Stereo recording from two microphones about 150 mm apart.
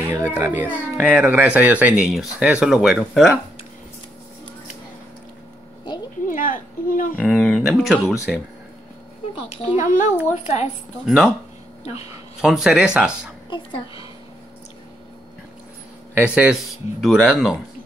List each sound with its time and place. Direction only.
0.1 s speech: 15° right (ahead or behind); by 3.3 s centre (ahead or behind)
6.2 s a sound: 65° left (ahead or behind)
7.2 s speech: 5° left (ahead or behind)
9.6 s a child's voice: 55° left (ahead or behind)
11.1 s speech: centre (ahead or behind)
12.4 s speech: 5° right (ahead or behind)
16.2 s speech: 5° right (ahead or behind)